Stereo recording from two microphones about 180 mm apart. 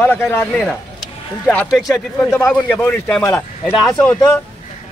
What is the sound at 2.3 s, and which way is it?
A man's voice, 10° left (ahead or behind).